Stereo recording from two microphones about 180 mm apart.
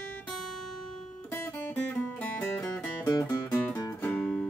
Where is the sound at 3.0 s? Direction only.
20° left (ahead or behind).